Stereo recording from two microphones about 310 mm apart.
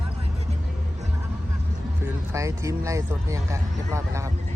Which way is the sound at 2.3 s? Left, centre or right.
Centre.